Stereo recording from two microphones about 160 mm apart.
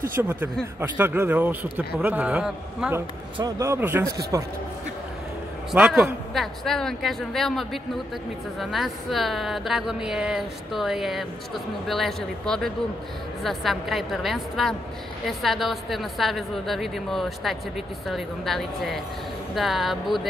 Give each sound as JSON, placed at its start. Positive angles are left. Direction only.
{"t": 0.1, "sound": "a man's voice", "side_deg": -15}
{"t": 3.3, "sound": "a man's voice", "side_deg": -20}
{"t": 5.7, "sound": "speech", "side_deg": -5}